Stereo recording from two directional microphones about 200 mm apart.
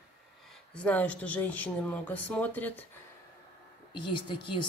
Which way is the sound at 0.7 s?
5° left (ahead or behind).